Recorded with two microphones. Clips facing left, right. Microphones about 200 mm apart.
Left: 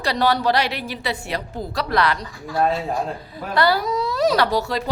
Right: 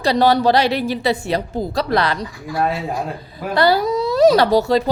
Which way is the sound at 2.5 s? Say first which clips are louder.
Even; 10° right (ahead or behind).